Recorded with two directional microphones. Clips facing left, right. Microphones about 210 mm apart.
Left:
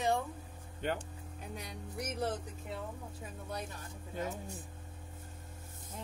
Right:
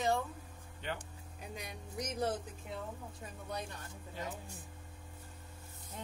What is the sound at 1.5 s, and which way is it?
Music, 15° right (ahead or behind).